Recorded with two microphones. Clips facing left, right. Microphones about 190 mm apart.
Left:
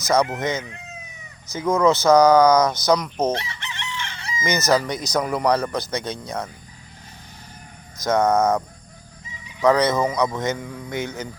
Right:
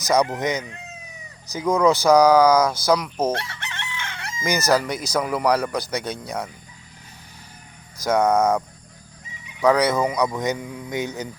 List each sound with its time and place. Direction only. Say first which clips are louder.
0.3 s speech: right 1 dB; 15° right (ahead or behind)
3.3 s chicken: even; 60° right (ahead or behind)
4.4 s speech: even; 10° right (ahead or behind)
7.9 s speech: even; 10° right (ahead or behind)